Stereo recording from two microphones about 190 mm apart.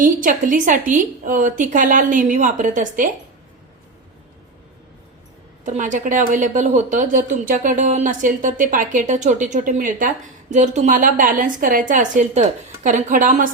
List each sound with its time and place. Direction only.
0.0 s a woman's voice: 45° right (ahead or behind)
5.6 s a woman's voice: 40° right (ahead or behind)